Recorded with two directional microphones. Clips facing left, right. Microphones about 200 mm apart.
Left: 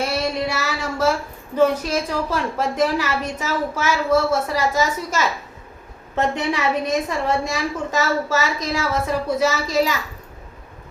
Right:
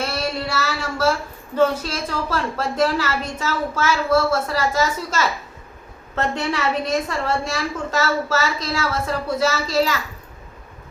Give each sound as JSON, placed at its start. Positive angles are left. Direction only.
{"t": 0.0, "sound": "child singing", "side_deg": 15}
{"t": 1.5, "sound": "a woman's voice", "side_deg": 15}